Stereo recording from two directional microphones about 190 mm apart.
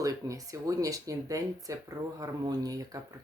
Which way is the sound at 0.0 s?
20° right (ahead or behind).